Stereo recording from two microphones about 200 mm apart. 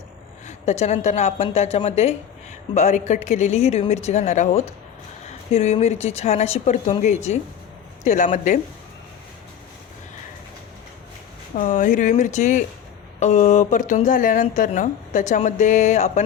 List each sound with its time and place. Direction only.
0.4 s a woman's voice: 35° left (ahead or behind)
11.5 s a woman's voice: 40° left (ahead or behind)